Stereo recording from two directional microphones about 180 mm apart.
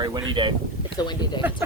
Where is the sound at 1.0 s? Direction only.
25° left (ahead or behind).